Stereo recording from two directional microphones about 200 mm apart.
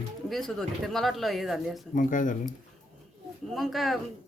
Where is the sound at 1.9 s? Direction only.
40° left (ahead or behind).